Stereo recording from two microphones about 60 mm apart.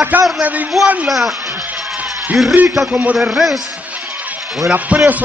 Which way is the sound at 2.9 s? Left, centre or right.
Right.